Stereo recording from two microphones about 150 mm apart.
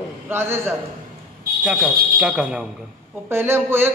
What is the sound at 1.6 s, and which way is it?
A man's voice, 5° right (ahead or behind).